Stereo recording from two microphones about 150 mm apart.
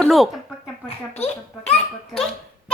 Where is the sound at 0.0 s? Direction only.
Centre (ahead or behind).